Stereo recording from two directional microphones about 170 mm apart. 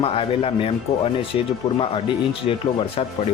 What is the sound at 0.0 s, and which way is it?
Speech, 35° left (ahead or behind).